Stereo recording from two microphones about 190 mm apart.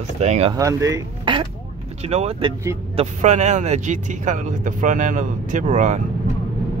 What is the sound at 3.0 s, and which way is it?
Speech, 35° right (ahead or behind).